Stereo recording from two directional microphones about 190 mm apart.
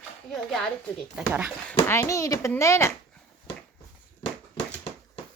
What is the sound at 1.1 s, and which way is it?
Speech, 5° right (ahead or behind).